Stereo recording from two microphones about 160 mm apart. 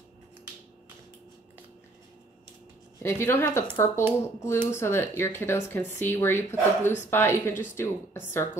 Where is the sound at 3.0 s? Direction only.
15° left (ahead or behind).